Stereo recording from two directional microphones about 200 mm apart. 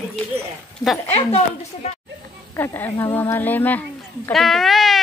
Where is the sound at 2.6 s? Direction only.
10° left (ahead or behind).